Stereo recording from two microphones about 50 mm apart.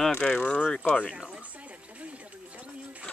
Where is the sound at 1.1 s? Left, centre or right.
Centre.